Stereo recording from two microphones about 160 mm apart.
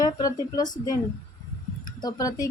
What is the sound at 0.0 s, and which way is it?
A woman's voice, 25° left (ahead or behind).